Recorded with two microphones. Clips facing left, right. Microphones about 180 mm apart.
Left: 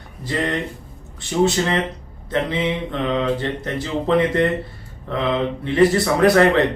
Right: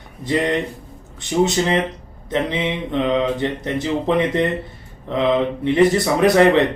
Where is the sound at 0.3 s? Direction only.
20° right (ahead or behind).